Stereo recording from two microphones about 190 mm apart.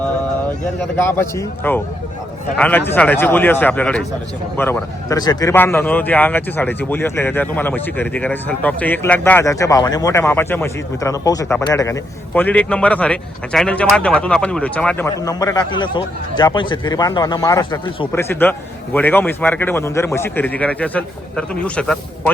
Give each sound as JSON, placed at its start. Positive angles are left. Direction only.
{"t": 0.9, "sound": "a man's voice", "side_deg": 10}
{"t": 18.1, "sound": "a man's voice", "side_deg": 10}